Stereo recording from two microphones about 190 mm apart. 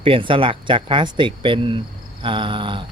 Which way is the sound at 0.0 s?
25° right (ahead or behind).